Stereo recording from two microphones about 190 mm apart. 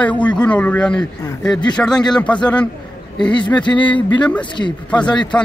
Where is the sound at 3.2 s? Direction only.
25° left (ahead or behind).